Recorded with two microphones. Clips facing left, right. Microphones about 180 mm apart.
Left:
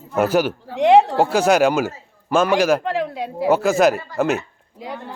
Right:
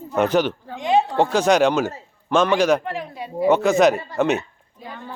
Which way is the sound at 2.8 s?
80° left.